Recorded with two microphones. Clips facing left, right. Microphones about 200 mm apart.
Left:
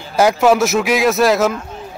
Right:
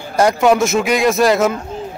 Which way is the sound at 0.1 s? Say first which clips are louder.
Even; 5° left (ahead or behind).